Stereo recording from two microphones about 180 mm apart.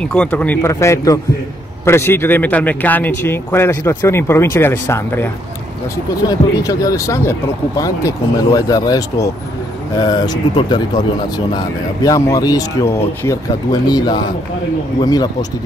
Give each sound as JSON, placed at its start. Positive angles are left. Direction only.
{"t": 0.0, "sound": "a man's voice", "side_deg": 5}